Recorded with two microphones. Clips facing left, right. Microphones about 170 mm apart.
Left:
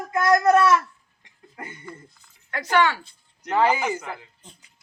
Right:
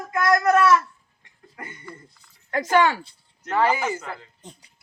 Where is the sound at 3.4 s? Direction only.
15° left (ahead or behind).